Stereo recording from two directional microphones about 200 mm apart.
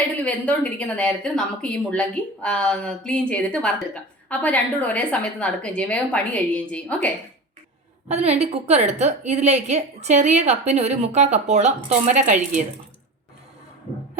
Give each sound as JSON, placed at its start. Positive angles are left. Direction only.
{"t": 0.3, "sound": "a woman's voice", "side_deg": 5}
{"t": 8.0, "sound": "a woman's voice", "side_deg": -30}